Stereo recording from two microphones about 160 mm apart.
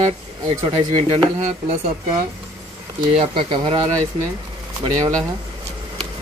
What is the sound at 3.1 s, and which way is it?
Speech, 35° right (ahead or behind).